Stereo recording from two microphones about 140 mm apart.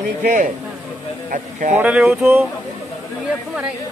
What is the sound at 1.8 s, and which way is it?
Speech, 5° right (ahead or behind).